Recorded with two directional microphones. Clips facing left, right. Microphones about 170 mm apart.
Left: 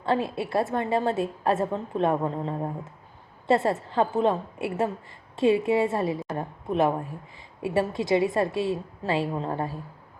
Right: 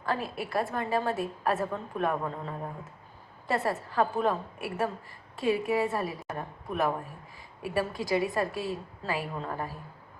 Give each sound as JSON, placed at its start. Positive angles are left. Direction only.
{"t": 0.0, "sound": "a woman's voice", "side_deg": 25}